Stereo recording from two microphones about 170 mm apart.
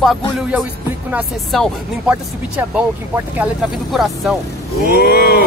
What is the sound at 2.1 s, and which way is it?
Speech, 10° right (ahead or behind).